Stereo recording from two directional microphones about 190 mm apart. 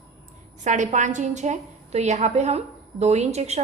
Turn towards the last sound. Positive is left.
turn(degrees=-35)  # may be behind; listen again after turning